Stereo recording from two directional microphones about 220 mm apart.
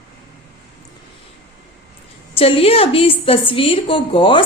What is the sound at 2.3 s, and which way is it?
A woman's voice, 25° left (ahead or behind).